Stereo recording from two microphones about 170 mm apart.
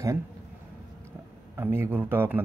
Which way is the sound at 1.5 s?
10° right (ahead or behind).